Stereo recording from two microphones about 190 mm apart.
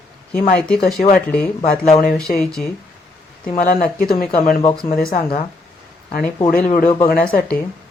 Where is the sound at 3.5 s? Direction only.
45° left (ahead or behind).